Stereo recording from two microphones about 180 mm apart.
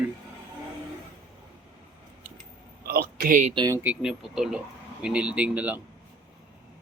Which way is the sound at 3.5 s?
25° right (ahead or behind).